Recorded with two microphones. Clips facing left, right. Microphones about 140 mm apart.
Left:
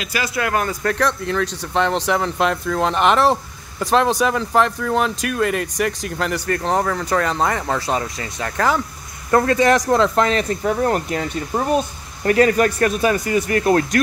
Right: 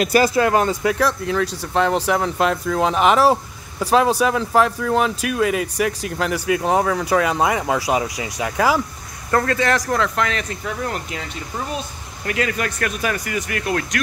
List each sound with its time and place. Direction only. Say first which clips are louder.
0.0 s speech: right 8 dB; 40° right (ahead or behind)
0.5 s speech: right 4 dB; 25° right (ahead or behind)
0.8 s speech: right 1 dB; 5° right (ahead or behind)
9.3 s speech: left 4 dB; 20° left (ahead or behind)